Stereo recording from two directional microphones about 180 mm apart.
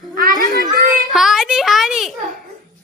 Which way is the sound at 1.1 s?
Centre (ahead or behind).